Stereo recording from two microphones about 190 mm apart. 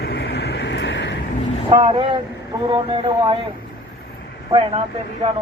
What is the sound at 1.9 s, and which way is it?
Speech, 20° right (ahead or behind).